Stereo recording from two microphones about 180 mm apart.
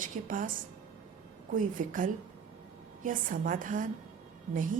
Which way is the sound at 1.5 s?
50° right (ahead or behind).